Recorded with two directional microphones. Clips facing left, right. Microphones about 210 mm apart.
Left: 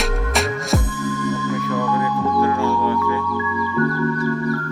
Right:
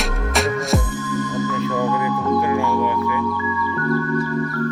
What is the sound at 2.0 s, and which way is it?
Music, 15° right (ahead or behind).